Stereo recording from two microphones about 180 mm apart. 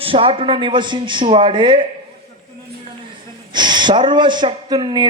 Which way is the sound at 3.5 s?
25° right (ahead or behind).